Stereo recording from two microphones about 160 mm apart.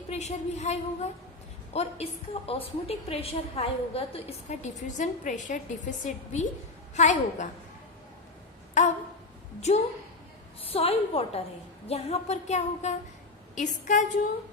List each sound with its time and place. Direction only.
0.1 s a woman's voice: 45° left (ahead or behind)
8.8 s a woman's voice: 45° left (ahead or behind)